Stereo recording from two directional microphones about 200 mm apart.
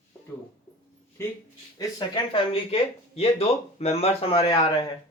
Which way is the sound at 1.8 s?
20° left (ahead or behind).